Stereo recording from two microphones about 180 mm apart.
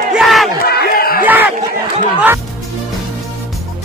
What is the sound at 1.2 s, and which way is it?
Crowd, 10° right (ahead or behind).